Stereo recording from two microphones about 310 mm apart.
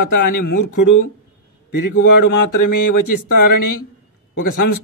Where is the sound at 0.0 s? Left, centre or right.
Left.